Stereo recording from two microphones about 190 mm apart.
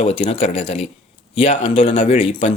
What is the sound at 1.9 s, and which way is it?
Speech, 40° left (ahead or behind).